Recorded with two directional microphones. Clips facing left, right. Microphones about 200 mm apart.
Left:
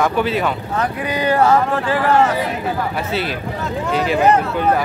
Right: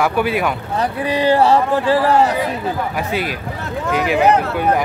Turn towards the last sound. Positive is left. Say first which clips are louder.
# even
turn(degrees=-10)  # may be behind; listen again after turning